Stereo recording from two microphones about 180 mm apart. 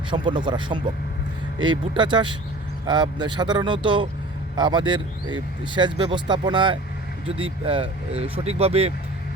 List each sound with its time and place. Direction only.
0.1 s speech: 25° right (ahead or behind)